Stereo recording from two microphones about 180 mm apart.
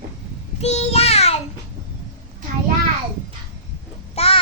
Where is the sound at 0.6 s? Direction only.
35° left (ahead or behind).